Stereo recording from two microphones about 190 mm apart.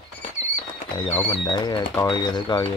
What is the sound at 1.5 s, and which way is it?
Speech, 25° left (ahead or behind).